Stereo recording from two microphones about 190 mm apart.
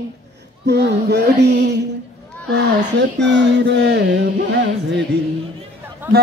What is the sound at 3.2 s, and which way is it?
Music, 65° right (ahead or behind).